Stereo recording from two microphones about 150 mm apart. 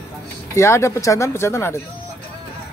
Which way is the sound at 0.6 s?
20° left (ahead or behind).